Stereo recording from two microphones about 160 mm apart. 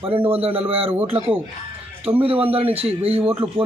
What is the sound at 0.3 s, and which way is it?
Speech, 35° right (ahead or behind).